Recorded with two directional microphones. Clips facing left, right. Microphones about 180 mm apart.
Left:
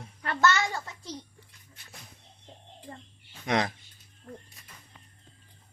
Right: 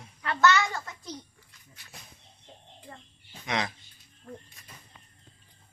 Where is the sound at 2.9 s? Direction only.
35° left (ahead or behind).